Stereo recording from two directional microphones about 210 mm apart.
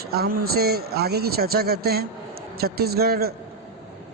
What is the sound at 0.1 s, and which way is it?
A man's voice, 45° right (ahead or behind).